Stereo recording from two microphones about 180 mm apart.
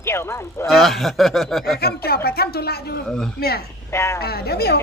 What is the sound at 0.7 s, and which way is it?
Speech, centre (ahead or behind).